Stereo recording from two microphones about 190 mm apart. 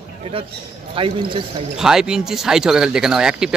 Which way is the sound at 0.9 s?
25° right (ahead or behind).